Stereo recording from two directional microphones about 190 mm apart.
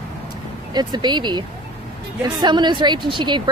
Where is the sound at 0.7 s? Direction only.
25° right (ahead or behind).